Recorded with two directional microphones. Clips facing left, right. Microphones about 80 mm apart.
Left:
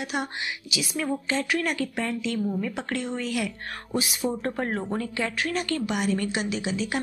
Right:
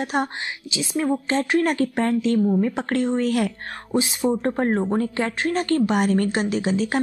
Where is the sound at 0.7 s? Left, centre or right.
Right.